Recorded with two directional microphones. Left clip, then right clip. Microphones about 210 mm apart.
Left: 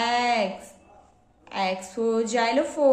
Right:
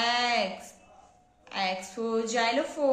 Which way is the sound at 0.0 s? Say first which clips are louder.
Left 3 dB; 15° left (ahead or behind).